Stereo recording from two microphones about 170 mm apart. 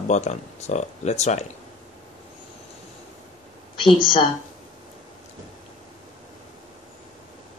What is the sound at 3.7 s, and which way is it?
Speech, 30° left (ahead or behind).